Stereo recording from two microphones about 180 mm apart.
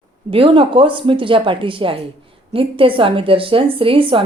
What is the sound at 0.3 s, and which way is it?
A woman's voice, 30° right (ahead or behind).